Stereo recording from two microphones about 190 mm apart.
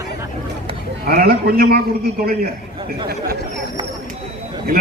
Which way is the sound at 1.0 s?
55° right (ahead or behind).